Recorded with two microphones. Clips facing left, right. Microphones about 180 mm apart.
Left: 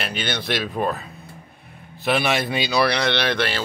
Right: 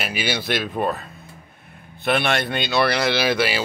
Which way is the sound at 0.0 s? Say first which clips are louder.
Right 2 dB; 5° right (ahead or behind).